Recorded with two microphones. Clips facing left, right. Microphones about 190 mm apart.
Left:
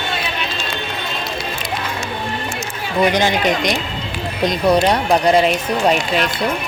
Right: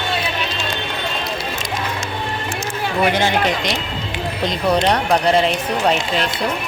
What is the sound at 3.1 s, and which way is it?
Speech, 15° left (ahead or behind).